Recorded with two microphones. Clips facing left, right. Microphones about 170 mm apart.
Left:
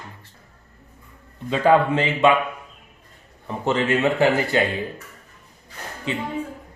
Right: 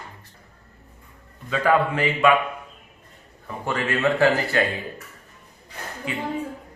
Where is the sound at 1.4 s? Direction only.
25° left (ahead or behind).